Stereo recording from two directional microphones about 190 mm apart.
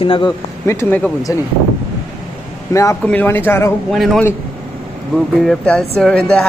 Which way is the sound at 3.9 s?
Centre (ahead or behind).